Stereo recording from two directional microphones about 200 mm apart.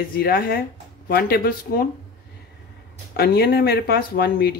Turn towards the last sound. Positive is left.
turn(degrees=50)  # may be behind; listen again after turning